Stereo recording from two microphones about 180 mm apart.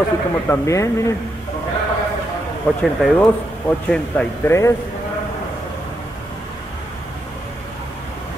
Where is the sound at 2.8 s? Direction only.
Centre (ahead or behind).